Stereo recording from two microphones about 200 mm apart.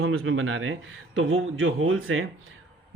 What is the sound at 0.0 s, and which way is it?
A man's voice, 85° right.